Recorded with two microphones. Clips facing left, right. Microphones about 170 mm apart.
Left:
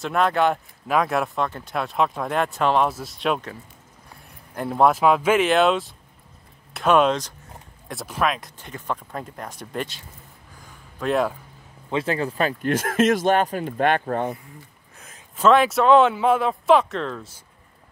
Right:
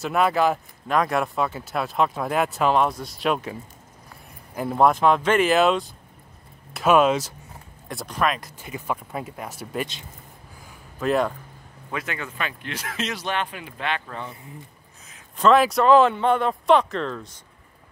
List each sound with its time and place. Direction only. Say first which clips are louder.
0.0 s speech: even; 5° right (ahead or behind)
4.6 s speech: even; centre (ahead or behind)
11.0 s speech: even; centre (ahead or behind)
11.9 s speech: left 8 dB; 30° left (ahead or behind); by 14.3 s 50° left (ahead or behind)
15.3 s speech: even; centre (ahead or behind)